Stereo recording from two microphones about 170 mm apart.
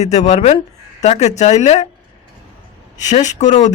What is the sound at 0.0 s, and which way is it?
A man's voice, 40° left (ahead or behind).